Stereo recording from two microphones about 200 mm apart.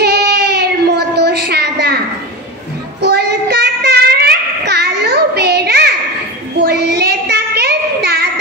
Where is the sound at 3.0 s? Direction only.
55° right (ahead or behind).